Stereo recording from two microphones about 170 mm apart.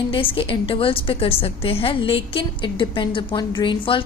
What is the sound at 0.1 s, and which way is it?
A woman's voice, 30° left (ahead or behind).